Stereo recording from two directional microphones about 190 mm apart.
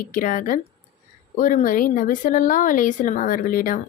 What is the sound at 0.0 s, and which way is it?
Speech, 45° left (ahead or behind).